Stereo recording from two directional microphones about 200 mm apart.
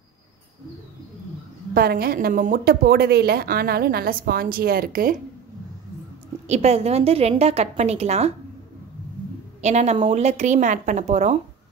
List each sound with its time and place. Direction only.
1.7 s a woman's voice: 50° right (ahead or behind)
6.4 s a woman's voice: 35° right (ahead or behind)
9.6 s a woman's voice: 35° right (ahead or behind)